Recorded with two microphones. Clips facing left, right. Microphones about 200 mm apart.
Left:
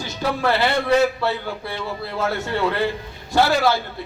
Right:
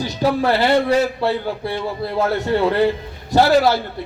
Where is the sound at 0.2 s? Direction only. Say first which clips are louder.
Right 3 dB; 40° right (ahead or behind).